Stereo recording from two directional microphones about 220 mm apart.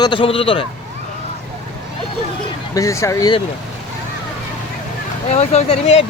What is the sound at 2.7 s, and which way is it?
Speech, 15° left (ahead or behind).